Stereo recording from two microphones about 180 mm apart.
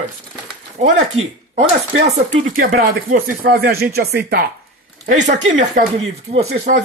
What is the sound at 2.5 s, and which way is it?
Speech, 50° right (ahead or behind).